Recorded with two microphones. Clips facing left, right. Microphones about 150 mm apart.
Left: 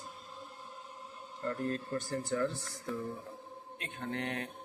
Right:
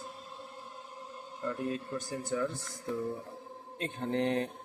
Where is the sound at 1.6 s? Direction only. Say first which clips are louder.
Even; 5° right (ahead or behind).